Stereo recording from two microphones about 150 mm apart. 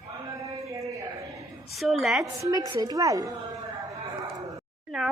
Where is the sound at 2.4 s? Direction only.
25° right (ahead or behind).